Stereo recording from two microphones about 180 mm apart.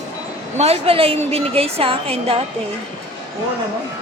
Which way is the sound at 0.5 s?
35° right (ahead or behind).